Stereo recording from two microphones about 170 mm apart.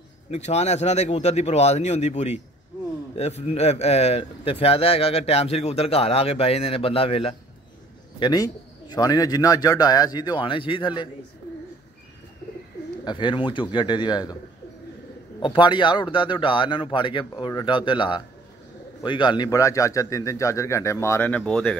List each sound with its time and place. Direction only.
0.3 s a man's voice: 40° left (ahead or behind)
13.0 s a man's voice: 25° left (ahead or behind)
15.4 s a man's voice: 30° left (ahead or behind); by 21.7 s 5° left (ahead or behind)